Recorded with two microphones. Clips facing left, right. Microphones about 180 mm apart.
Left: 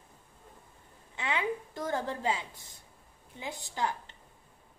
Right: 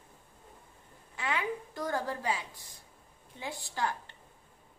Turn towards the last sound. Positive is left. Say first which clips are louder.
# left 1 dB
turn(degrees=20)  # may be behind; listen again after turning